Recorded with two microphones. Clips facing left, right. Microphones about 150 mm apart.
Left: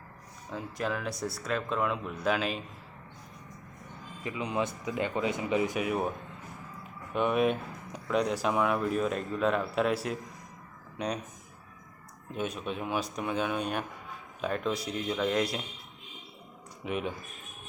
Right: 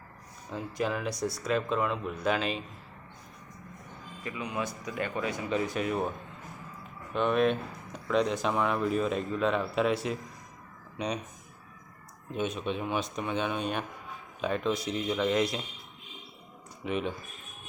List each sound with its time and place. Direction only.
0.5 s speech: centre (ahead or behind)
4.2 s speech: 20° left (ahead or behind); by 11.2 s centre (ahead or behind)
12.3 s speech: 5° left (ahead or behind)
16.8 s speech: 10° left (ahead or behind)